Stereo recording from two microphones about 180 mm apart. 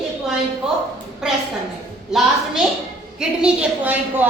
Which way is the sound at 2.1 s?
5° right (ahead or behind).